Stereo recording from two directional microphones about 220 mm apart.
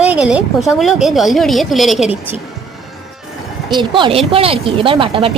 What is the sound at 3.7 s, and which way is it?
A woman's voice, 20° right (ahead or behind).